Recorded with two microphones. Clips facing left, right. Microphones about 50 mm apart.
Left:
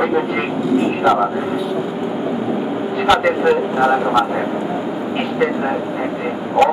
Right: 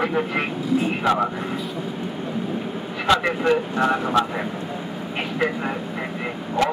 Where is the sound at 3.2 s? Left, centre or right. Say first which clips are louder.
Left 6 dB; centre.